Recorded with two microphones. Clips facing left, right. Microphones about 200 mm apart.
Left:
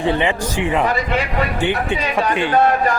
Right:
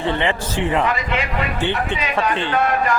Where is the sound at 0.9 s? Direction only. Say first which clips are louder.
Left 2 dB; 40° left (ahead or behind).